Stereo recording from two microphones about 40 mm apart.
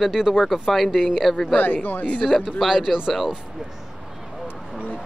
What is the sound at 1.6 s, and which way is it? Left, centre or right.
Speech, left.